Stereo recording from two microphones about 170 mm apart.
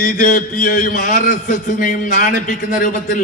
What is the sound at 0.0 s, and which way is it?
A man's voice, 50° left (ahead or behind).